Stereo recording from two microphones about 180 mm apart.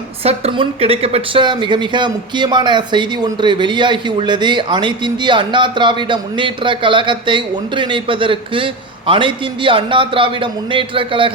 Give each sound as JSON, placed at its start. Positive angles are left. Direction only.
{"t": 0.2, "sound": "a woman's voice", "side_deg": -35}